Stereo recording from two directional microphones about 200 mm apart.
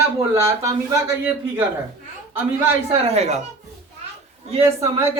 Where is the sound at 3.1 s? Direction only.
35° right (ahead or behind).